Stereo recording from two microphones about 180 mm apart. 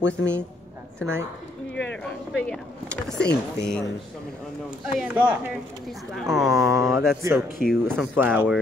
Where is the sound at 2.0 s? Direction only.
5° left (ahead or behind).